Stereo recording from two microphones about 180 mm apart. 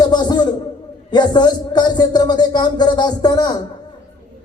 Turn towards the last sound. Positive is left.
turn(degrees=20)  # may be behind; listen again after turning